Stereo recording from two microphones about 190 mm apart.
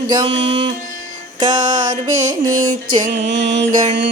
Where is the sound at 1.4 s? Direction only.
25° right (ahead or behind).